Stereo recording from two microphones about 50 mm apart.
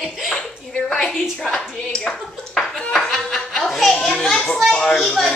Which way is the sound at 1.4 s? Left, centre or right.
Centre.